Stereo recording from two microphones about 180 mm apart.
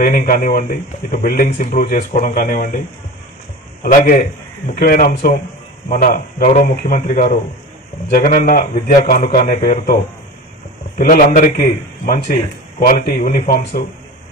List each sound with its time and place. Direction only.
0.0 s a man's voice: 55° left (ahead or behind)
3.8 s a man's voice: 45° left (ahead or behind)
11.0 s a man's voice: 55° left (ahead or behind)